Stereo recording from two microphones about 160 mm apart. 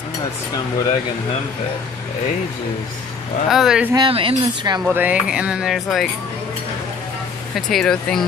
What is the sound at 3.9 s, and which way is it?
Speech, 30° right (ahead or behind).